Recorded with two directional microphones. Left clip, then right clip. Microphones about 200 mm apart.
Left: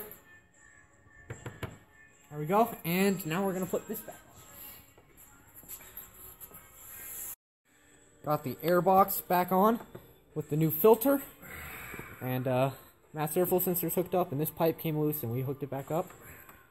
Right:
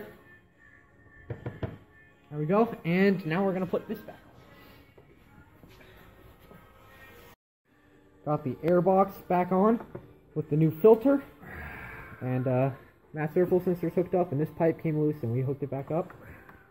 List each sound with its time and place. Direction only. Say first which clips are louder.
1.2 s music: right 4 dB; 15° left (ahead or behind)
2.3 s speech: right 1 dB; 25° left (ahead or behind)
2.9 s speech: right 4 dB; 35° left (ahead or behind)
8.8 s speech: even; 20° left (ahead or behind)